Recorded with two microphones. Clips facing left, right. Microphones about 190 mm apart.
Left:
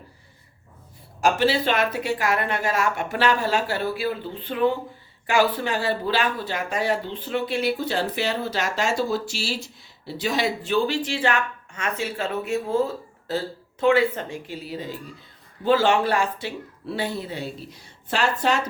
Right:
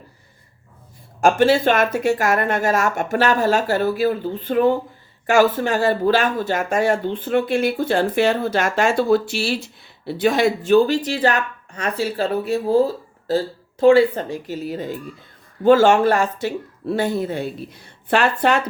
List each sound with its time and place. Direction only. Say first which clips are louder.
1.2 s speech: right 6 dB; 50° right (ahead or behind)